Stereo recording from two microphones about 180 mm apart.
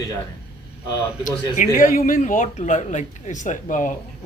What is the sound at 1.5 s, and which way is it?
A man's voice, 50° left (ahead or behind).